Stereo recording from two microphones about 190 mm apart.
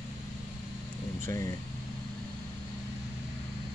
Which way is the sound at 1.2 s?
15° left (ahead or behind).